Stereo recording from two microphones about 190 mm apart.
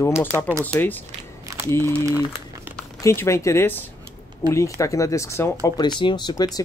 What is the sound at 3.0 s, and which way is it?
Speech, 15° left (ahead or behind).